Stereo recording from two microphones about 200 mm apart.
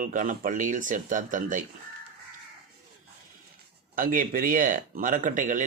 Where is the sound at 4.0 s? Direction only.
45° right (ahead or behind).